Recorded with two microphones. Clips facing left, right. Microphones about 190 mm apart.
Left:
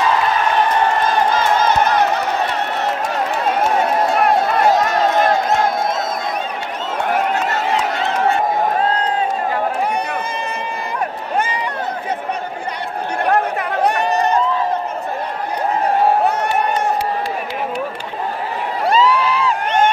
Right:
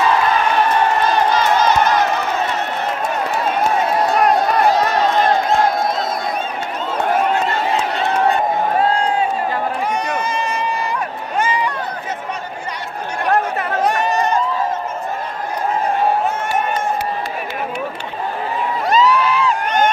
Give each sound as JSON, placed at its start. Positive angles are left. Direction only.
{"t": 1.7, "sound": "crowd", "side_deg": 60}
{"t": 10.1, "sound": "run", "side_deg": 55}
{"t": 13.8, "sound": "run", "side_deg": 60}
{"t": 16.3, "sound": "run", "side_deg": 65}
{"t": 18.9, "sound": "a sound", "side_deg": 30}